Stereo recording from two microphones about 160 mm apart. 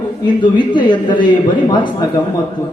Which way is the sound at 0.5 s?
30° left (ahead or behind).